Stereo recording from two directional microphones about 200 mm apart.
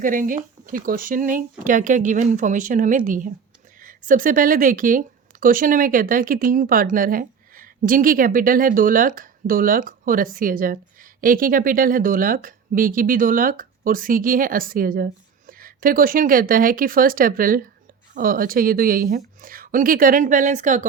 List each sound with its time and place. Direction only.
0.0 s speech: 40° right (ahead or behind)